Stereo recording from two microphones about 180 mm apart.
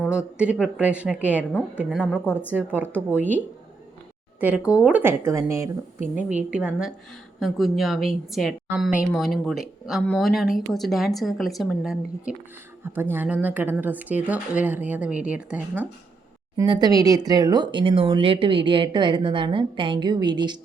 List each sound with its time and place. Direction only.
0.3 s speech: 5° right (ahead or behind)
2.2 s a woman's voice: 10° left (ahead or behind)
2.5 s speech: 10° right (ahead or behind)
6.5 s speech: 5° right (ahead or behind)
16.6 s speech: 25° right (ahead or behind)